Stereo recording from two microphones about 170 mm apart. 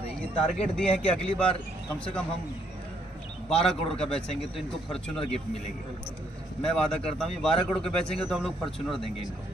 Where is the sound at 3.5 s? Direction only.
Centre (ahead or behind).